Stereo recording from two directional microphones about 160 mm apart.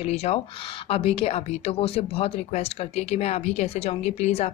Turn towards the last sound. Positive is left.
turn(degrees=45)  # may be behind; listen again after turning